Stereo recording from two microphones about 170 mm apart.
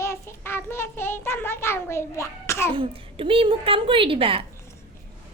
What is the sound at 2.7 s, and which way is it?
A child's voice, 30° right (ahead or behind).